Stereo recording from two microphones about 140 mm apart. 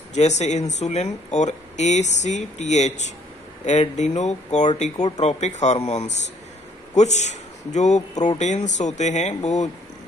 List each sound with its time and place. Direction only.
0.1 s a man's voice: 55° left (ahead or behind)